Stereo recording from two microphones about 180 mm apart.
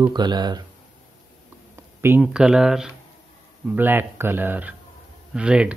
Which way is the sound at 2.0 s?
15° right (ahead or behind).